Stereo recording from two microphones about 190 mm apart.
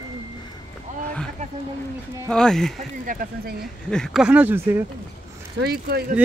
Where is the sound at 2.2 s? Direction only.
5° left (ahead or behind).